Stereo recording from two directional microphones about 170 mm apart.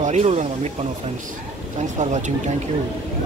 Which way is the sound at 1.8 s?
45° right (ahead or behind).